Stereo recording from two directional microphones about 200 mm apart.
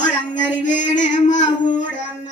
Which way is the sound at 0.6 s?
40° left (ahead or behind).